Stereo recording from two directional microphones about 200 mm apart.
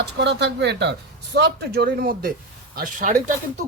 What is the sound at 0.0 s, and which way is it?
Speech, 60° right (ahead or behind).